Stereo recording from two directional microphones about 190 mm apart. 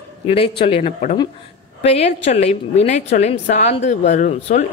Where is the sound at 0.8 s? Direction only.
40° left (ahead or behind).